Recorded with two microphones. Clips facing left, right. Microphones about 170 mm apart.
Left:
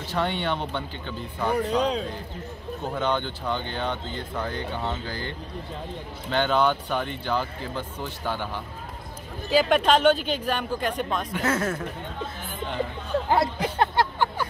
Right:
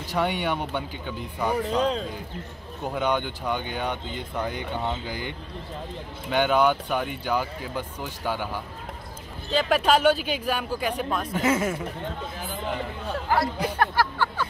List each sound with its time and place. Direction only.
0.1 s speech: 10° right (ahead or behind)
2.9 s speech: 10° right (ahead or behind)
6.3 s speech: 10° right (ahead or behind)
9.5 s speech: centre (ahead or behind)
13.3 s speech: 25° left (ahead or behind)